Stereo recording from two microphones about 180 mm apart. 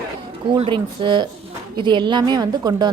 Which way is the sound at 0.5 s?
25° right (ahead or behind).